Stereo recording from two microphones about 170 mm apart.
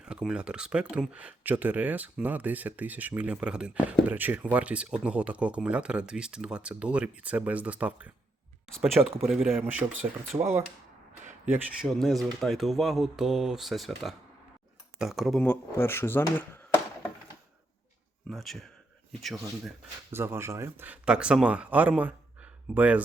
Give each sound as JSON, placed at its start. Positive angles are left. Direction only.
{"t": 0.0, "sound": "speech", "side_deg": -5}
{"t": 10.3, "sound": "speech", "side_deg": -25}
{"t": 11.3, "sound": "a sound", "side_deg": -45}
{"t": 11.8, "sound": "speech", "side_deg": 0}
{"t": 18.3, "sound": "speech", "side_deg": 0}
{"t": 20.1, "sound": "speech", "side_deg": -15}